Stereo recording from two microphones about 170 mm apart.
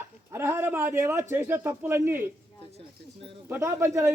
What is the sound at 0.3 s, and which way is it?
Speech, 15° right (ahead or behind).